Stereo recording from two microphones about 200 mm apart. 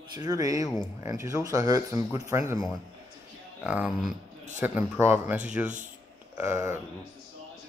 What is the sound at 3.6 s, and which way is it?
Speech, 5° right (ahead or behind).